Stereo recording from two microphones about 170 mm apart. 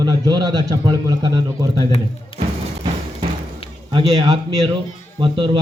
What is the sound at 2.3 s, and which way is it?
Music, 30° left (ahead or behind).